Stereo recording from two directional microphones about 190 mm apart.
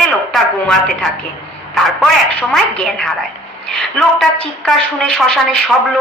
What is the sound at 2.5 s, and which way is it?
A woman's voice, 5° left (ahead or behind).